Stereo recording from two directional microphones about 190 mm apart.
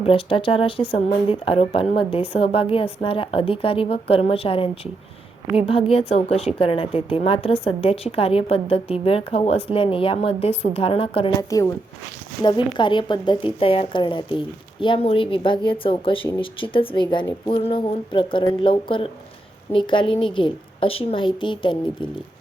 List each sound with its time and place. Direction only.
0.0 s a woman's voice: 30° left (ahead or behind)
11.3 s a woman's voice: 15° left (ahead or behind)